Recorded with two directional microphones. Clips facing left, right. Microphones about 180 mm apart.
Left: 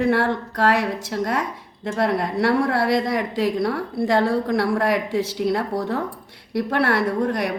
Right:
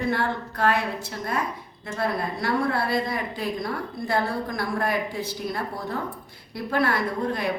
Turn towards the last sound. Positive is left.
turn(degrees=75)  # may be behind; listen again after turning